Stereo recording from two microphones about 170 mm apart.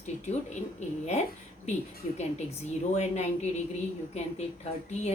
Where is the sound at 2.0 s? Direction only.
45° left (ahead or behind).